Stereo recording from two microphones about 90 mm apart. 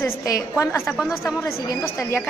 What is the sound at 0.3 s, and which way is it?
Speech, 30° left (ahead or behind).